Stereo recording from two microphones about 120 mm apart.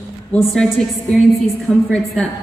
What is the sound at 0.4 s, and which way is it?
A woman's voice, centre (ahead or behind).